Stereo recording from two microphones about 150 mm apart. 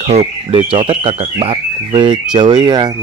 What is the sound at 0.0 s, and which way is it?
Speech, 45° right (ahead or behind).